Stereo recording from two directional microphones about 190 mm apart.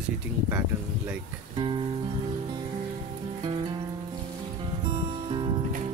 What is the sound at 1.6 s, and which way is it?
Music, 25° right (ahead or behind).